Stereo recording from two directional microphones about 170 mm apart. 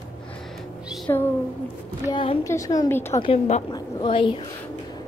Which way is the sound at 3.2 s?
40° left (ahead or behind).